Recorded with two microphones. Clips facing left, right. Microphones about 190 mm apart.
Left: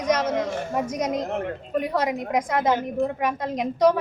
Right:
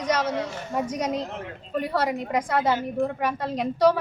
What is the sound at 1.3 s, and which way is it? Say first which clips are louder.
Speech: left 8 dB; 55° left (ahead or behind).